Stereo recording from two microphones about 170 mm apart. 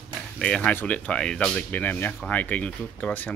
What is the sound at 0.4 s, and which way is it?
Speech, 5° left (ahead or behind).